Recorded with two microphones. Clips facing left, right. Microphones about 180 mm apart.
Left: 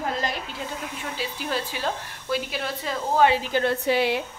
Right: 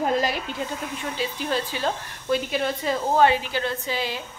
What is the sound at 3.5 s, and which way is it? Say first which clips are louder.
Speech: left 5 dB; 60° left (ahead or behind).